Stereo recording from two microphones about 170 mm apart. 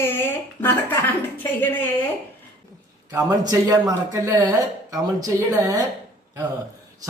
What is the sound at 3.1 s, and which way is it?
Speech, 20° right (ahead or behind).